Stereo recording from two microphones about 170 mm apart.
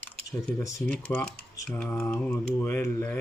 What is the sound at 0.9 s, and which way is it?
Speech, 10° left (ahead or behind).